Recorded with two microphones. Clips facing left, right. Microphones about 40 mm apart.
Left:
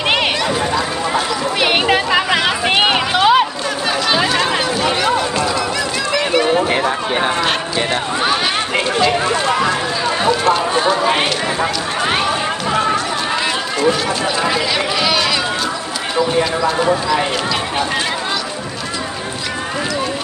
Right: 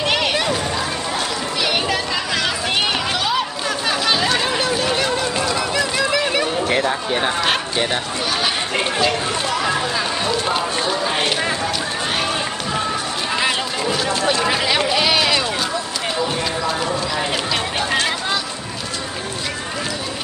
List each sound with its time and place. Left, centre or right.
1.6 s a sound: left
2.6 s run: left
3.2 s a sound: left
3.8 s chatter: centre
4.6 s a sound: centre
5.0 s run: centre
5.5 s run: centre
6.7 s a sound: centre
9.5 s run: centre
11.0 s run: left
14.4 s sheep: centre
16.4 s clip-clop: centre